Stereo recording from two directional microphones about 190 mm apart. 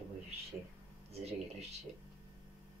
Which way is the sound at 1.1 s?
35° right (ahead or behind).